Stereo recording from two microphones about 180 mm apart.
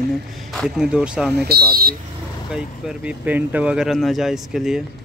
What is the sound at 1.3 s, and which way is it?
Speech, 65° right (ahead or behind).